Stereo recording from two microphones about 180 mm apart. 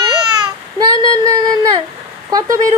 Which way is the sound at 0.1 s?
20° right (ahead or behind).